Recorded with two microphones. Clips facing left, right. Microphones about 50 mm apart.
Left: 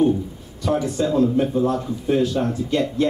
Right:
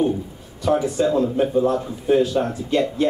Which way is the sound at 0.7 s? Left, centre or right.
Centre.